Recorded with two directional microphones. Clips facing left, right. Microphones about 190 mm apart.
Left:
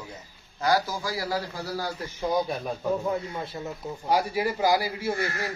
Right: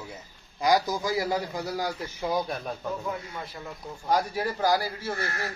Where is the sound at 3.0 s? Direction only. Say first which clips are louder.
Left 5 dB; 25° left (ahead or behind).